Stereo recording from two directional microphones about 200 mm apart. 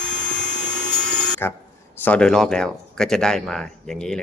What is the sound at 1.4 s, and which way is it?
Speech, 10° left (ahead or behind).